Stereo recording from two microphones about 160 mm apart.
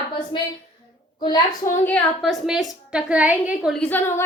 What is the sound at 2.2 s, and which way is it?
A woman's voice, centre (ahead or behind).